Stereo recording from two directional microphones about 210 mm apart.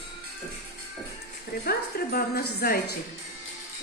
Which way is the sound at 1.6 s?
45° left (ahead or behind).